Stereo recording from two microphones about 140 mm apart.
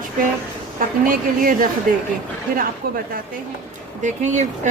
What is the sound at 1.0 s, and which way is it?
Speech, 80° right.